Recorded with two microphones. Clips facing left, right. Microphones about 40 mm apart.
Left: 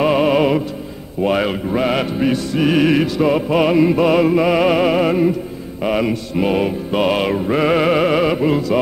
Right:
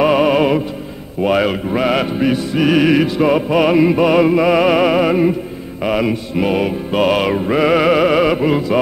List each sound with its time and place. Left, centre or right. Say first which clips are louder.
0.0 s music: right 2 dB; centre